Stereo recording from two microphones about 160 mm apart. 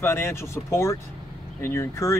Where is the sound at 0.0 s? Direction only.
15° left (ahead or behind).